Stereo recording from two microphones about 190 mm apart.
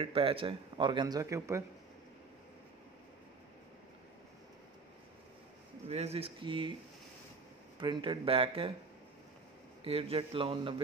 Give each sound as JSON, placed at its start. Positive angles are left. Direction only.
{"t": 0.0, "sound": "a man's voice", "side_deg": -30}
{"t": 5.9, "sound": "speech", "side_deg": -35}
{"t": 7.8, "sound": "a man's voice", "side_deg": -25}
{"t": 9.8, "sound": "a man's voice", "side_deg": -30}